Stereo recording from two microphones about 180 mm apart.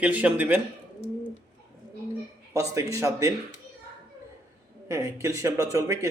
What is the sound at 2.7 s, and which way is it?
Speech, 15° right (ahead or behind).